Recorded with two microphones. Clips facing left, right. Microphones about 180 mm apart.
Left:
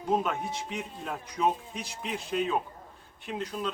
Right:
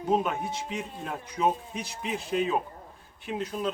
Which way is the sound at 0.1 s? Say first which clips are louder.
Right 2 dB; 5° right (ahead or behind).